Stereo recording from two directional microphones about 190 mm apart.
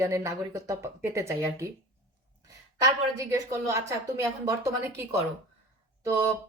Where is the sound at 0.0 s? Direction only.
15° right (ahead or behind).